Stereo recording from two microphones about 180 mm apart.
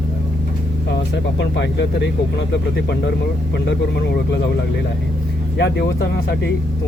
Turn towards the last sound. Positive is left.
turn(degrees=70)  # may be behind; listen again after turning